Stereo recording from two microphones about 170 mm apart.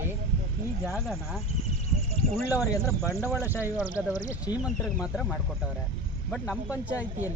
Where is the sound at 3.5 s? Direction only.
10° right (ahead or behind).